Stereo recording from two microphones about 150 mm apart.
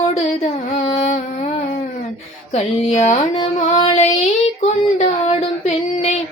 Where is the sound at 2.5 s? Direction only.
50° left (ahead or behind).